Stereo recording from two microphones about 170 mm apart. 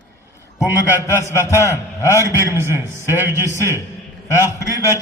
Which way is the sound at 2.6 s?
15° right (ahead or behind).